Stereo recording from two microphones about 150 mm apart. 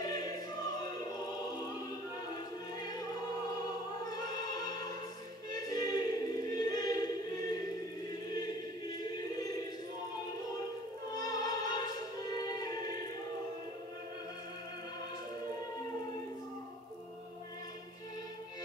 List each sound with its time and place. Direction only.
0.0 s choir: 25° left (ahead or behind)
4.1 s music: 25° left (ahead or behind)
5.5 s choir: 25° left (ahead or behind)
11.1 s music: 25° left (ahead or behind)